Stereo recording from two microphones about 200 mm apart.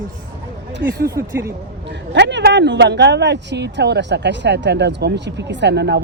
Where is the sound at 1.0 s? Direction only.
15° right (ahead or behind).